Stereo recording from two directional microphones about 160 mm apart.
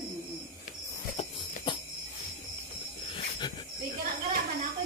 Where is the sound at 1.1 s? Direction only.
35° left (ahead or behind).